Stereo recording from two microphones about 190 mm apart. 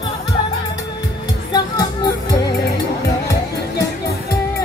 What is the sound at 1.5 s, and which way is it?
Music, 20° left (ahead or behind).